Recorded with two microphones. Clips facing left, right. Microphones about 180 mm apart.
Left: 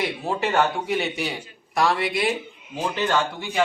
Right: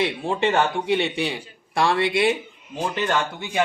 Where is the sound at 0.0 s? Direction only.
25° right (ahead or behind).